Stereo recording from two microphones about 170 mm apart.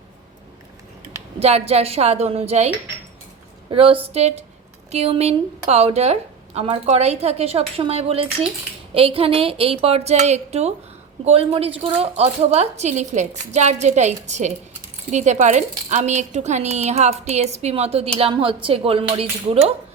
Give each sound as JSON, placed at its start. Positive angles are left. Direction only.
{"t": 1.4, "sound": "a woman's voice", "side_deg": -40}
{"t": 3.7, "sound": "a woman's voice", "side_deg": -30}